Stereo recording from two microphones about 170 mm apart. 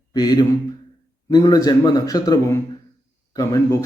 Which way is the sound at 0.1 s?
25° left (ahead or behind).